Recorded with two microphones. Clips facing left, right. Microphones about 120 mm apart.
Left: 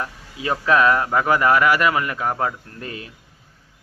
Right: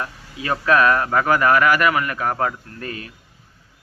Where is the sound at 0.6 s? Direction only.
20° left (ahead or behind).